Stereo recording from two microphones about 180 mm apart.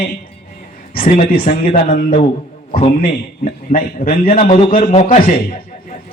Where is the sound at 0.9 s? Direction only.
50° left (ahead or behind).